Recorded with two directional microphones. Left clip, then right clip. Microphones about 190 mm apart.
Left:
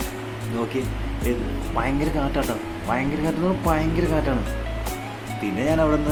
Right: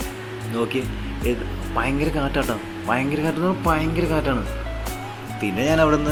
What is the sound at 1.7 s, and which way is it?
Speech, 10° right (ahead or behind).